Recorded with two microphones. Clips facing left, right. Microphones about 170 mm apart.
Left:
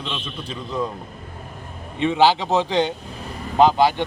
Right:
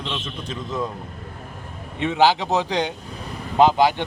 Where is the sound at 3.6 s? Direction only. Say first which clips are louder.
Even; 15° right (ahead or behind).